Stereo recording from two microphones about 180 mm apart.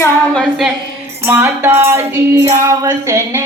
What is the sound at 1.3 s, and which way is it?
Music, 15° right (ahead or behind).